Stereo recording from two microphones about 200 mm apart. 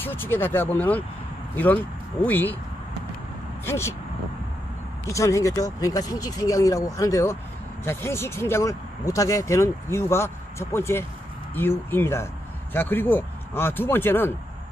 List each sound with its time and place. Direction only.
0.0 s speech: 10° left (ahead or behind)
3.6 s speech: 15° left (ahead or behind)
5.1 s speech: 15° left (ahead or behind)